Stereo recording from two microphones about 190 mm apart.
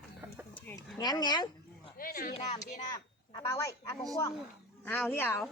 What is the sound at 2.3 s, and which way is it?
Speech, 35° left (ahead or behind).